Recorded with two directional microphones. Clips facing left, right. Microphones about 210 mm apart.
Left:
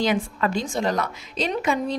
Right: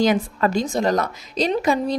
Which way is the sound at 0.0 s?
40° right (ahead or behind).